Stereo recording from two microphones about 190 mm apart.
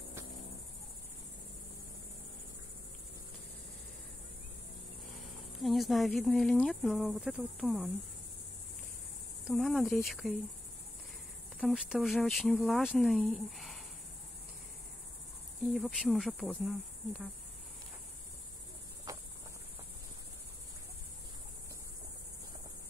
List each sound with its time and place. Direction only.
5.6 s cricket: centre (ahead or behind)
9.4 s cricket: centre (ahead or behind)
11.6 s cricket: 5° right (ahead or behind)
15.7 s cricket: centre (ahead or behind)
19.1 s cricket: 20° right (ahead or behind)